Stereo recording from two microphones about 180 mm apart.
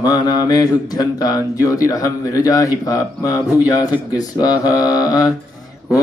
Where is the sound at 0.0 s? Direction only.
20° left (ahead or behind).